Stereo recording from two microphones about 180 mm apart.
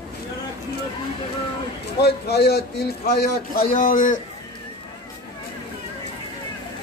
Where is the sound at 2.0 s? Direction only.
65° left (ahead or behind).